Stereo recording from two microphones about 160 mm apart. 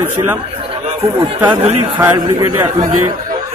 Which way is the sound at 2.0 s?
15° right (ahead or behind).